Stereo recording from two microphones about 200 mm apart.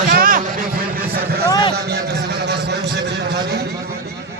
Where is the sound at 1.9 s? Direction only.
55° right (ahead or behind).